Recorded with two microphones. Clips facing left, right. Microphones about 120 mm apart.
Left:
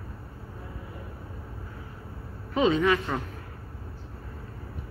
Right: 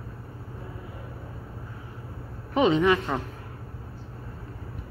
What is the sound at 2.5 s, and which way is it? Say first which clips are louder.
Speech: right 2 dB; 20° right (ahead or behind).